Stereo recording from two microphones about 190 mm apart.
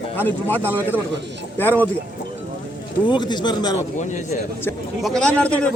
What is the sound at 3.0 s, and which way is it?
Speech, 25° left (ahead or behind).